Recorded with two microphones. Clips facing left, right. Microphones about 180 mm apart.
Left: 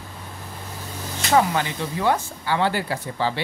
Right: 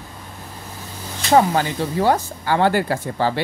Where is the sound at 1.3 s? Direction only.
35° right (ahead or behind).